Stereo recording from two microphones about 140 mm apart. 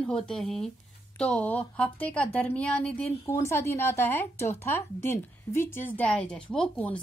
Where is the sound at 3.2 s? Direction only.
20° left (ahead or behind).